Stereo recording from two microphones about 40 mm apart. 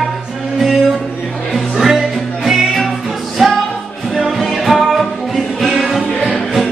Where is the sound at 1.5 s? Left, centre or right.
Centre.